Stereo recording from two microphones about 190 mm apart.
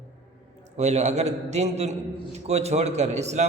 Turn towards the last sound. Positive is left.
turn(degrees=-35)  # may be behind; listen again after turning